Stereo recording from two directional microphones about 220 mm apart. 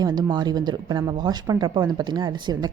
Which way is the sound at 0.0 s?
20° right (ahead or behind).